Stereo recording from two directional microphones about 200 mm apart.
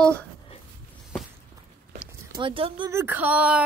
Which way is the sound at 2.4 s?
25° right (ahead or behind).